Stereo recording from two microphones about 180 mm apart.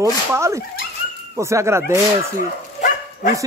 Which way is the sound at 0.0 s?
15° right (ahead or behind).